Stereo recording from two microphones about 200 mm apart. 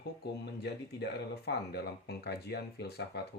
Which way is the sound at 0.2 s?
55° left (ahead or behind).